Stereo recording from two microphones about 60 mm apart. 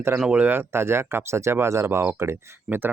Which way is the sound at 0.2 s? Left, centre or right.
Centre.